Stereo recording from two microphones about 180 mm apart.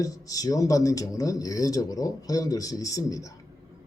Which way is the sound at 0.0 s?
20° left (ahead or behind).